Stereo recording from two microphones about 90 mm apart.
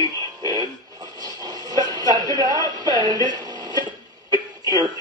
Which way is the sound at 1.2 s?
50° right (ahead or behind).